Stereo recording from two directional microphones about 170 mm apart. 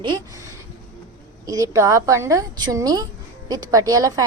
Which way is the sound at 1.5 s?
20° right (ahead or behind).